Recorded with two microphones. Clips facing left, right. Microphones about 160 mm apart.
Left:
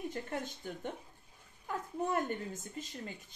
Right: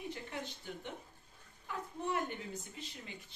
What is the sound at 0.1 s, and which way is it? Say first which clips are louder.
Speech: left 4 dB; 45° left (ahead or behind).